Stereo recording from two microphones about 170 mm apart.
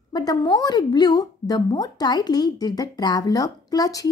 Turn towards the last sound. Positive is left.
turn(degrees=20)  # may be behind; listen again after turning